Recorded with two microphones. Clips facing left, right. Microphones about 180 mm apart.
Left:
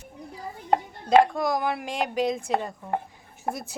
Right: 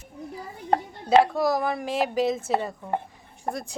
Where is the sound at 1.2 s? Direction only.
Centre (ahead or behind).